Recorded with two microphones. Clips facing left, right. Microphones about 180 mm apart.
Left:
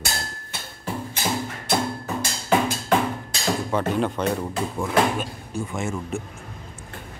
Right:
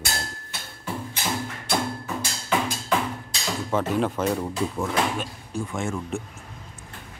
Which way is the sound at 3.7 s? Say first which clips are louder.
Right 3 dB; centre (ahead or behind).